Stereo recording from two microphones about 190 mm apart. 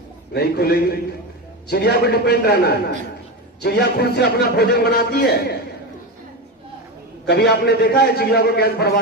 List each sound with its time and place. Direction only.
0.3 s a man's voice: 55° left (ahead or behind)
7.2 s a man's voice: 60° left (ahead or behind)